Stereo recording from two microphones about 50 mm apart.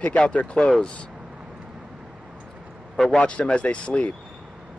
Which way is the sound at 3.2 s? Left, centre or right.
Left.